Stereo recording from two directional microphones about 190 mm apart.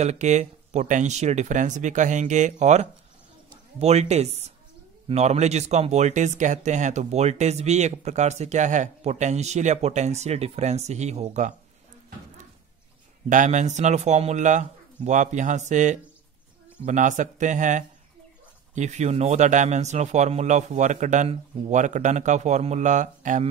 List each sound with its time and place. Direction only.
0.0 s speech: 35° right (ahead or behind)
13.3 s speech: 40° right (ahead or behind)